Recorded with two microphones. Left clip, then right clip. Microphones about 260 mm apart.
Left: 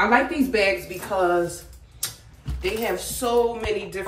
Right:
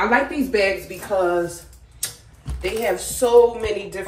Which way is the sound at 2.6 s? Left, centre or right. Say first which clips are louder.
Right 3 dB; centre.